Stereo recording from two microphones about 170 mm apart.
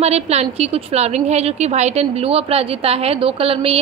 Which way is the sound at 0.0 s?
40° right (ahead or behind).